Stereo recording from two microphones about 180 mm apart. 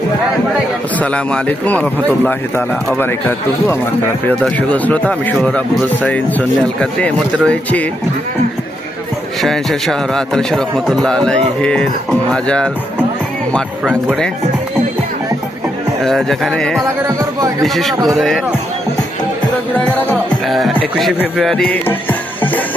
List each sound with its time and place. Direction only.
0.9 s a man's voice: 5° left (ahead or behind)
9.4 s a man's voice: centre (ahead or behind)
16.0 s a man's voice: centre (ahead or behind)
17.1 s speech: 15° right (ahead or behind)
17.6 s a man's voice: centre (ahead or behind)
19.8 s a man's voice: 5° left (ahead or behind)